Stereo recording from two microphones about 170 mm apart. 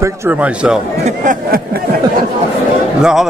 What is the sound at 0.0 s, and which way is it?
Speech, 10° right (ahead or behind).